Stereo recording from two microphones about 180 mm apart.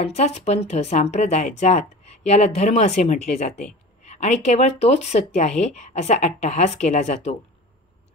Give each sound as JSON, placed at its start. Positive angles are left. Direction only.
{"t": 0.0, "sound": "speech", "side_deg": 40}